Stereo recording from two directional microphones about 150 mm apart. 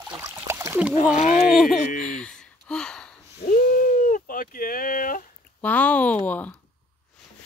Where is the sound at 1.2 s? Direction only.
55° left (ahead or behind).